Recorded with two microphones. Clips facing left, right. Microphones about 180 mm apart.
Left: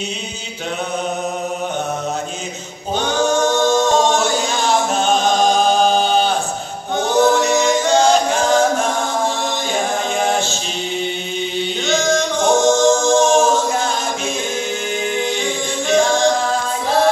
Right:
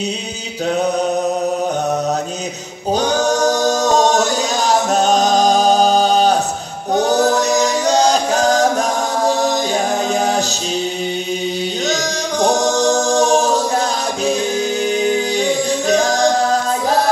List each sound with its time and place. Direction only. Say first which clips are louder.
3.0 s singing: even; 40° right (ahead or behind)
7.0 s a capella: even; 40° right (ahead or behind)
11.9 s a capella: left 3 dB; 40° right (ahead or behind)
15.9 s a capella: left 1 dB; 40° right (ahead or behind)